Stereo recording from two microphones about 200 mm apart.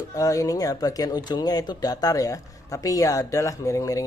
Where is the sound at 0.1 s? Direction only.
15° left (ahead or behind).